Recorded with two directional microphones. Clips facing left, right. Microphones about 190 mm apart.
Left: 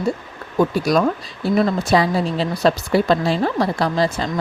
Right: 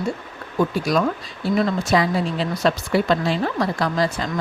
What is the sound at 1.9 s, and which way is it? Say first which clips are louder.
A woman's voice: left 2 dB; 35° left (ahead or behind).